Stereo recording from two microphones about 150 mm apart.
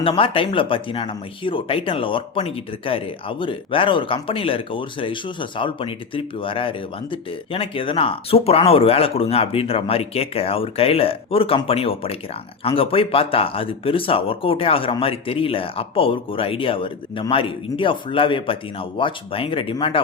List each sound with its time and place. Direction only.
0.0 s speech: 35° left (ahead or behind)